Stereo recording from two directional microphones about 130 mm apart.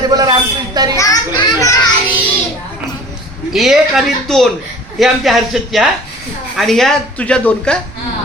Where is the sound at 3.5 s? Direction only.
5° right (ahead or behind).